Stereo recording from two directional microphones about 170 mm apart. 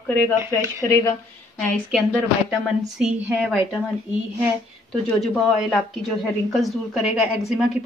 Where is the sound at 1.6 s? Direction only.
Centre (ahead or behind).